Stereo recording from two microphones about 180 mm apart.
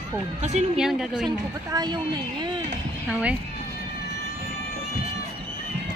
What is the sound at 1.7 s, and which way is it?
Speech, 20° right (ahead or behind).